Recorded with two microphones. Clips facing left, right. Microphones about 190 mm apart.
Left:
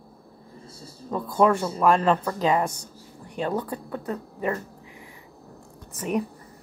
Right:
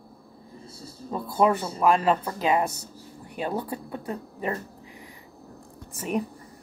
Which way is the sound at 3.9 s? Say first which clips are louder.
Left 2 dB; 25° right (ahead or behind).